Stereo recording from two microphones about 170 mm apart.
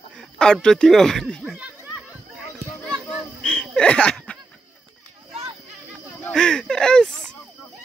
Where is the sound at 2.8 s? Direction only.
Centre (ahead or behind).